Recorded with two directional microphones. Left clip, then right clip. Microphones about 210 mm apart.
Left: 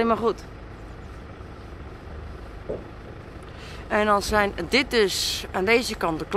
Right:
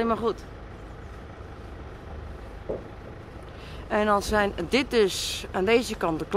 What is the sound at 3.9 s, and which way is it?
A woman's voice, 10° right (ahead or behind).